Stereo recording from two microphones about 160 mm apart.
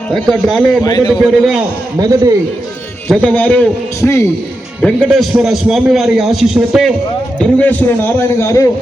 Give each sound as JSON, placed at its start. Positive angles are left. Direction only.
{"t": 0.1, "sound": "a man's voice", "side_deg": 0}
{"t": 0.8, "sound": "a man's voice", "side_deg": 25}
{"t": 1.2, "sound": "a man's voice", "side_deg": 0}
{"t": 2.0, "sound": "a man's voice", "side_deg": -20}
{"t": 3.2, "sound": "a man's voice", "side_deg": 10}
{"t": 4.8, "sound": "a man's voice", "side_deg": 0}
{"t": 7.3, "sound": "a man's voice", "side_deg": 10}